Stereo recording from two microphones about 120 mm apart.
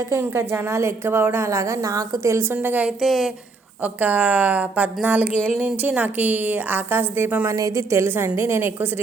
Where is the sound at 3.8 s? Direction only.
15° right (ahead or behind).